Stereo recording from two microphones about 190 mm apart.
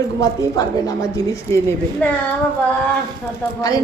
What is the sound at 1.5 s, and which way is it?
Speech, 15° left (ahead or behind).